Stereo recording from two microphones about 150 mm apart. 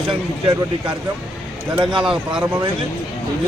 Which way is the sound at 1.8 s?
30° right (ahead or behind).